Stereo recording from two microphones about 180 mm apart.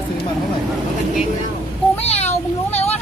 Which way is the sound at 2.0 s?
35° left (ahead or behind).